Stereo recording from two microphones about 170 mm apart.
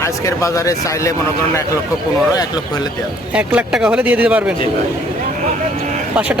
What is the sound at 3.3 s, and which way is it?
Speech, 5° right (ahead or behind).